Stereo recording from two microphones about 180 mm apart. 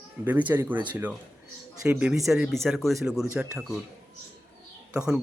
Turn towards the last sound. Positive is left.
turn(degrees=-5)  # may be behind; listen again after turning